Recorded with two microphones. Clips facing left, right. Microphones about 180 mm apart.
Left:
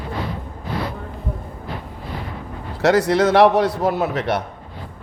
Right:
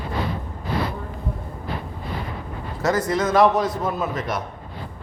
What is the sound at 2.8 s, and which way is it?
A man's voice, 75° left (ahead or behind).